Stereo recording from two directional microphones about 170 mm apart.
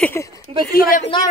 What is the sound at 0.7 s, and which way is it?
Speech, 55° left (ahead or behind).